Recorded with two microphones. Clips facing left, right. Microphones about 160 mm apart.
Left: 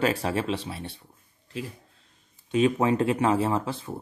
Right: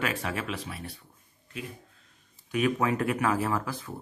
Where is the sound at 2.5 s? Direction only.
25° left (ahead or behind).